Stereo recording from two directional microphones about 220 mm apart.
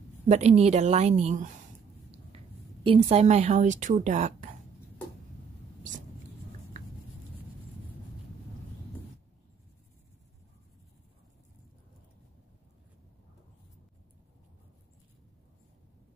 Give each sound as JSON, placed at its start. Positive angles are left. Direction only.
{"t": 0.3, "sound": "a woman's voice", "side_deg": -30}
{"t": 2.8, "sound": "a woman's voice", "side_deg": -25}